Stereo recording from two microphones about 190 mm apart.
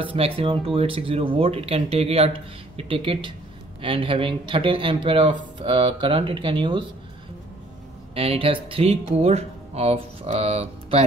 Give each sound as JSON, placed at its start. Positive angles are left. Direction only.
{"t": 0.0, "sound": "speech", "side_deg": -30}
{"t": 8.1, "sound": "speech", "side_deg": -30}